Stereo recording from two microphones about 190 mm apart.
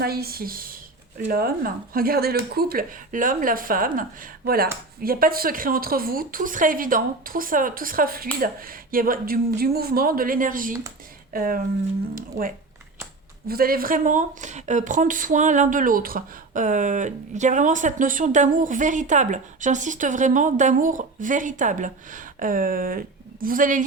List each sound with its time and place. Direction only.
0.0 s speech: 55° right (ahead or behind)